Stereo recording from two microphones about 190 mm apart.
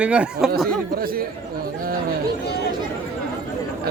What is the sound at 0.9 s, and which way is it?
Speech, 50° right (ahead or behind).